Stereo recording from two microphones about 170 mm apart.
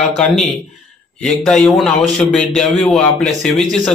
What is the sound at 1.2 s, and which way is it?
A man's voice, 5° left (ahead or behind).